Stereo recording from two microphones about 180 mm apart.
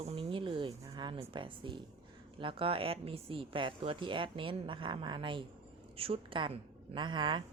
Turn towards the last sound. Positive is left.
turn(degrees=-25)  # may be behind; listen again after turning